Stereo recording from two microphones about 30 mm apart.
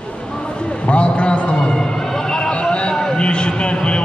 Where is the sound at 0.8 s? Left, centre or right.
Left.